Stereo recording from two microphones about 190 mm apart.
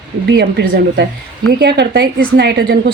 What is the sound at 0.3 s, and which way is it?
Speech, 60° right (ahead or behind).